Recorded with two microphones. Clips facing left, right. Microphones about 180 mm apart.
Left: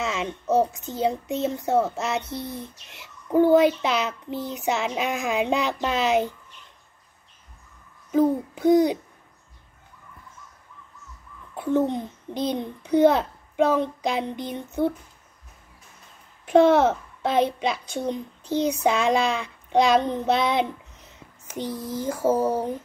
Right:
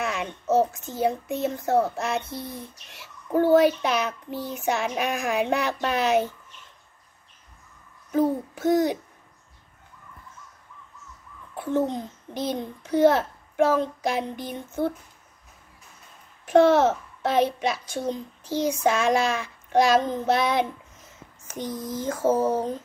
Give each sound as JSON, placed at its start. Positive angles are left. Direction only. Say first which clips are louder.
{"t": 0.0, "sound": "a child's voice", "louder": "left 1 dB", "side_deg": 20}
{"t": 8.5, "sound": "a child's voice", "louder": "left 4 dB", "side_deg": 15}
{"t": 11.5, "sound": "babbling", "louder": "left 3 dB", "side_deg": 15}
{"t": 11.9, "sound": "a child's voice", "louder": "left 2 dB", "side_deg": 20}
{"t": 16.4, "sound": "a child's voice", "louder": "left 1 dB", "side_deg": 15}
{"t": 21.5, "sound": "speech", "louder": "left 1 dB", "side_deg": -15}
{"t": 22.0, "sound": "a child's voice", "louder": "even", "side_deg": 15}